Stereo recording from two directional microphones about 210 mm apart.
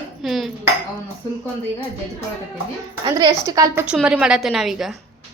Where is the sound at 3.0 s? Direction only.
20° right (ahead or behind); by 5.0 s centre (ahead or behind).